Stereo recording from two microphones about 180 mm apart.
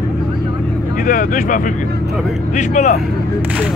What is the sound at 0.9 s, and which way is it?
Speech, 50° left (ahead or behind).